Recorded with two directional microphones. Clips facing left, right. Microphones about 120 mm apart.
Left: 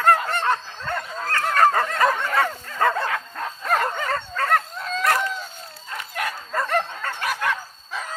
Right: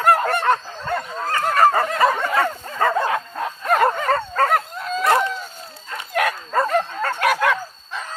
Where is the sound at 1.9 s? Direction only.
Centre (ahead or behind).